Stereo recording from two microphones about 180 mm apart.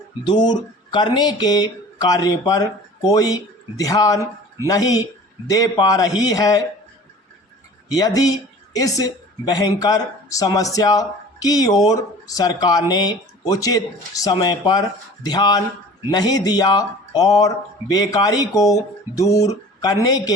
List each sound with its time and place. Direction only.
0.3 s speech: 25° left (ahead or behind)
7.9 s speech: 20° left (ahead or behind)